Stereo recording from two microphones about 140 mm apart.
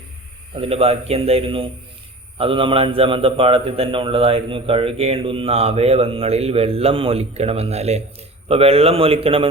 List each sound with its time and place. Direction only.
0.5 s a man's voice: 45° right (ahead or behind)